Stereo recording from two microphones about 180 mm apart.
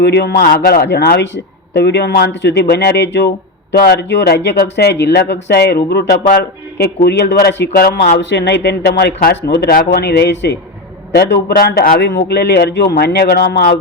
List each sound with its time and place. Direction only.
0.0 s a man's voice: 70° left (ahead or behind)
8.3 s a man's voice: 80° left; by 12.1 s 60° left (ahead or behind)
12.3 s speech: 70° left (ahead or behind)